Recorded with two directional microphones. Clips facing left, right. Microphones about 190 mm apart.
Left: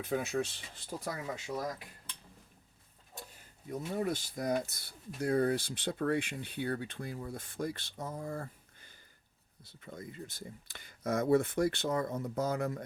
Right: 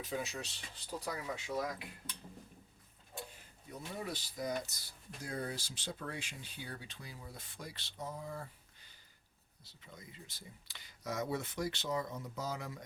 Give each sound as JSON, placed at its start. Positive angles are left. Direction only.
{"t": 0.0, "sound": "speech", "side_deg": 55}
{"t": 3.7, "sound": "speech", "side_deg": 50}